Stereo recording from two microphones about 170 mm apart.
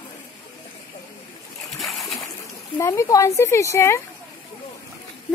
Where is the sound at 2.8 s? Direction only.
20° left (ahead or behind).